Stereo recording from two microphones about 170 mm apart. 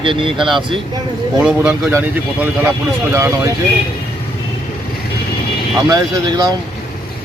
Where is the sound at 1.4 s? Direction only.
10° right (ahead or behind).